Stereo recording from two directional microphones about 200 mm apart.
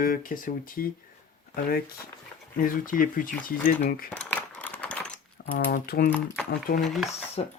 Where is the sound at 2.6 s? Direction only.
45° left (ahead or behind).